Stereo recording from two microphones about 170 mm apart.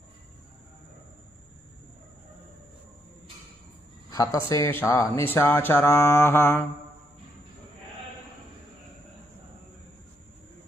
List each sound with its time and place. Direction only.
4.1 s speech: 20° left (ahead or behind)